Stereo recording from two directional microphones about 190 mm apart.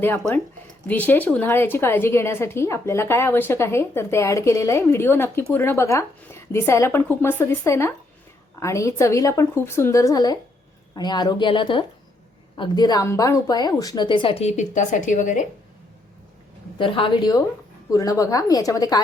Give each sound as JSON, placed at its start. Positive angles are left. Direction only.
{"t": 0.0, "sound": "a woman's voice", "side_deg": 10}
{"t": 16.7, "sound": "a woman's voice", "side_deg": 25}